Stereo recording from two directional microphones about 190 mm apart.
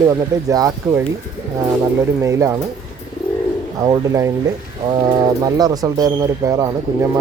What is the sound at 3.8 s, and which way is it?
Speech, 15° right (ahead or behind).